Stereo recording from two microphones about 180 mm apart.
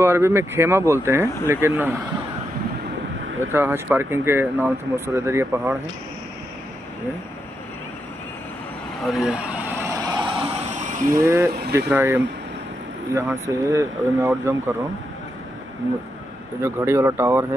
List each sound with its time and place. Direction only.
0.0 s speech: 15° right (ahead or behind)
3.5 s speech: 10° right (ahead or behind)
9.0 s vehicle: centre (ahead or behind); by 10.4 s 25° right (ahead or behind)
11.1 s speech: 15° right (ahead or behind)
16.6 s speech: 15° right (ahead or behind)